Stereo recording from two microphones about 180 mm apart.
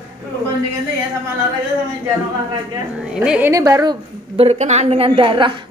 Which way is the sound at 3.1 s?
5° right (ahead or behind).